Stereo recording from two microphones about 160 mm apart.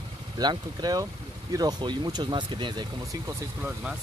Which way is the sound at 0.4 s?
25° right (ahead or behind).